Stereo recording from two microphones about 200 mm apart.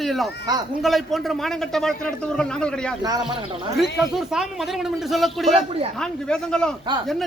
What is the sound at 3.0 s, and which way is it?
Speech, 25° right (ahead or behind).